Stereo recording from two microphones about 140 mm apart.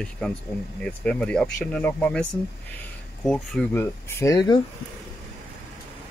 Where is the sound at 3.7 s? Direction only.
20° left (ahead or behind).